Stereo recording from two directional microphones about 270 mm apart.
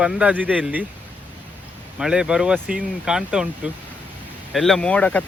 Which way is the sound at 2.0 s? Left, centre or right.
Centre.